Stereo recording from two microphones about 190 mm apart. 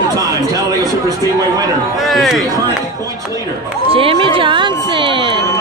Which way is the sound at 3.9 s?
30° right (ahead or behind).